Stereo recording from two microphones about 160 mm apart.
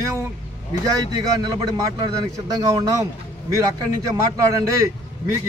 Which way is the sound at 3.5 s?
20° right (ahead or behind).